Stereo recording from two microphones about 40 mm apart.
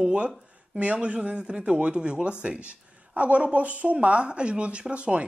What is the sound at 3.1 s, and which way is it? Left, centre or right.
Speech, right.